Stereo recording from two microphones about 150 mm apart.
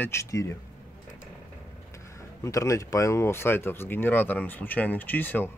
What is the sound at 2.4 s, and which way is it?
Speech, 20° left (ahead or behind).